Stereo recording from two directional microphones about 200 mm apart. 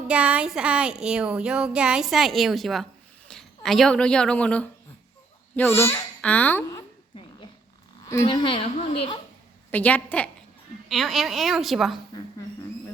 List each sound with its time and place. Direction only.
0.1 s a sound: 5° right (ahead or behind)
3.2 s a woman's voice: centre (ahead or behind)
5.7 s babbling: 10° left (ahead or behind)
8.0 s a woman's voice: 20° left (ahead or behind)
9.7 s a woman's voice: 5° left (ahead or behind)
10.8 s a sound: centre (ahead or behind)